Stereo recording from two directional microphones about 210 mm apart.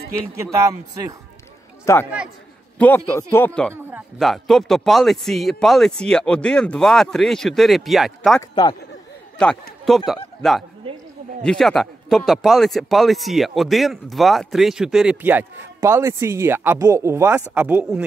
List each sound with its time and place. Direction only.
0.4 s a man's voice: 15° right (ahead or behind)
2.8 s a man's voice: 5° left (ahead or behind)
8.4 s a man's voice: 20° left (ahead or behind)
9.4 s a man's voice: 5° left (ahead or behind)
11.4 s a man's voice: centre (ahead or behind)